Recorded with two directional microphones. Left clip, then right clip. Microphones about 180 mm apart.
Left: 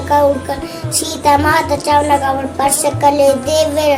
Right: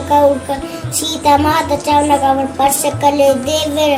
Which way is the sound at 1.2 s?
20° left (ahead or behind).